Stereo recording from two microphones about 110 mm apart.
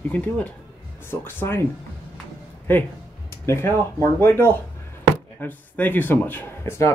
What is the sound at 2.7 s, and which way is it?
Speech, 20° left (ahead or behind).